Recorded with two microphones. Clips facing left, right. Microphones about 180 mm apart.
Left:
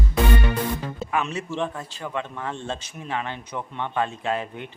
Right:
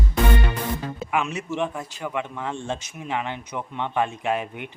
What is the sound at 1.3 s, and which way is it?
A man's voice, 15° right (ahead or behind).